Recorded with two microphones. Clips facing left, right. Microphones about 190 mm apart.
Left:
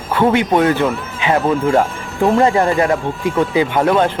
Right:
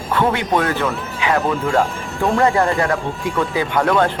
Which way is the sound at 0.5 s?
20° left (ahead or behind).